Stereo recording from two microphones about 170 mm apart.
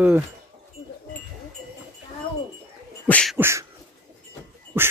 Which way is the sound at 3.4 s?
15° right (ahead or behind).